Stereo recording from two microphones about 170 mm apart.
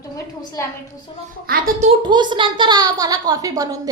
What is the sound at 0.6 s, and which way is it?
Speech, 15° left (ahead or behind).